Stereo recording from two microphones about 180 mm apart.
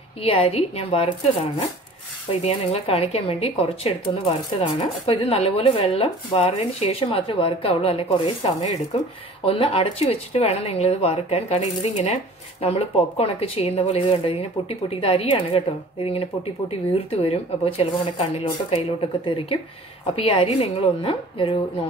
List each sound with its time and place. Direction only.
0.2 s speech: 30° left (ahead or behind)